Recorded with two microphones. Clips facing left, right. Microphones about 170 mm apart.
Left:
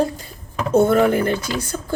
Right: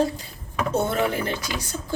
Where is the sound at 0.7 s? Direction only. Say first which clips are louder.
Left 9 dB; 50° left (ahead or behind).